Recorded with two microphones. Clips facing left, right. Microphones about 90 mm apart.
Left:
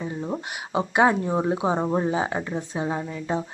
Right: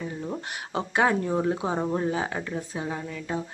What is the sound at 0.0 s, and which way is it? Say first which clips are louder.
Speech: left 3 dB; 20° left (ahead or behind).